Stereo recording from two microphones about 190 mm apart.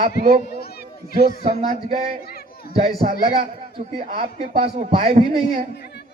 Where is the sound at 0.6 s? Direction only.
55° left (ahead or behind).